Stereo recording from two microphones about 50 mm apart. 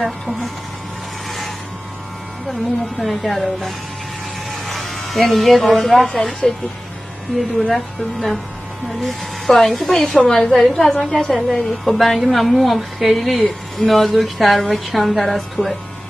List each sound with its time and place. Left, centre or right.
0.0 s a woman's voice: centre
3.0 s a woman's voice: centre
4.5 s electric shaver: centre
6.0 s a woman's voice: centre
7.6 s a woman's voice: centre
11.3 s a woman's voice: centre